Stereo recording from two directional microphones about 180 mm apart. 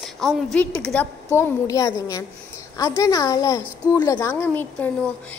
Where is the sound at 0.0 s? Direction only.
Centre (ahead or behind).